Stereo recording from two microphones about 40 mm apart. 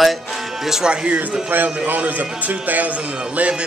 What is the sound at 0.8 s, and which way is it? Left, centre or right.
Speech, right.